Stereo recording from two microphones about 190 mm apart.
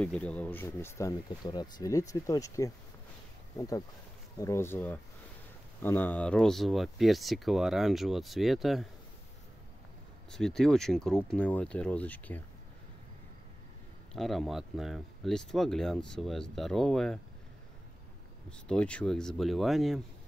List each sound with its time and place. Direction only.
0.0 s speech: 5° left (ahead or behind)
10.3 s speech: 5° left (ahead or behind)
14.1 s speech: centre (ahead or behind)
18.7 s speech: 5° left (ahead or behind)